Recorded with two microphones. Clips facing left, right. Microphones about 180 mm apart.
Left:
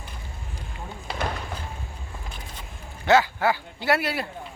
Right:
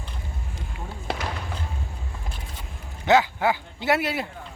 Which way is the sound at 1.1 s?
70° right (ahead or behind).